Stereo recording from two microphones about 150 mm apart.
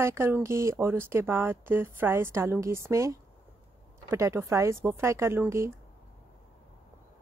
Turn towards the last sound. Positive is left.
turn(degrees=-15)  # may be behind; listen again after turning